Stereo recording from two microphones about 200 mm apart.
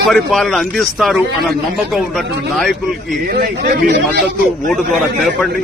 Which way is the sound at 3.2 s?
55° right (ahead or behind).